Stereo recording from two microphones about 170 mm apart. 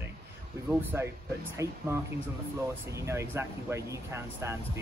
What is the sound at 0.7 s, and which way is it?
Speech, 10° right (ahead or behind).